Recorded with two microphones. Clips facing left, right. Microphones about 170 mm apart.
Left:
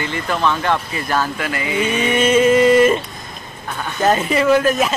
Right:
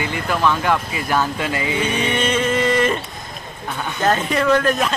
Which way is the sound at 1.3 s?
25° right (ahead or behind).